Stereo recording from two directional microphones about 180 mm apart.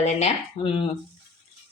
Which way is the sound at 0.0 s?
40° left (ahead or behind).